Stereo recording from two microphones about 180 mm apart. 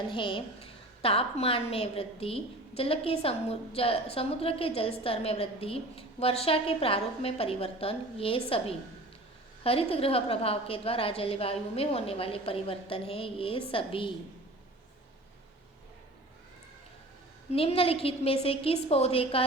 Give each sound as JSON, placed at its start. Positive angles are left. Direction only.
{"t": 0.1, "sound": "a woman's voice", "side_deg": 25}
{"t": 17.5, "sound": "a woman's voice", "side_deg": 30}